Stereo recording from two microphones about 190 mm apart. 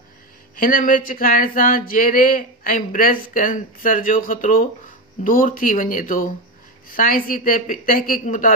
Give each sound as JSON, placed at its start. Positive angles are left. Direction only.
{"t": 0.6, "sound": "speech", "side_deg": 45}